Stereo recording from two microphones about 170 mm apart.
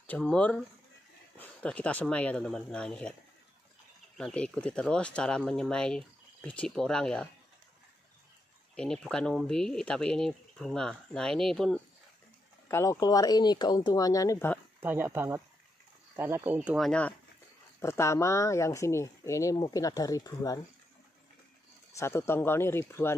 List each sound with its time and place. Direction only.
0.0 s speech: 5° left (ahead or behind)
4.2 s speech: 5° left (ahead or behind)
8.7 s speech: 5° left (ahead or behind)
12.6 s speech: 15° left (ahead or behind)
14.8 s speech: 10° right (ahead or behind); by 17.1 s 5° left (ahead or behind)
17.7 s speech: 15° left (ahead or behind)
21.9 s speech: 15° left (ahead or behind)